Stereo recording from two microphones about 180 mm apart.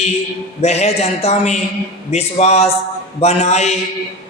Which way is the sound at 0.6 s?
35° left (ahead or behind).